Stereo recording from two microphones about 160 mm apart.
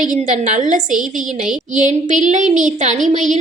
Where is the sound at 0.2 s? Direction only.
50° right (ahead or behind).